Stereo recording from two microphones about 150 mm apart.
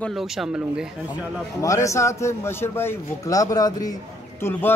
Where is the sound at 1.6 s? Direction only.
20° left (ahead or behind).